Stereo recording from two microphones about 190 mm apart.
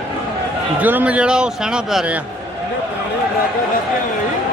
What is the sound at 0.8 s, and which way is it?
A man's voice, 10° right (ahead or behind).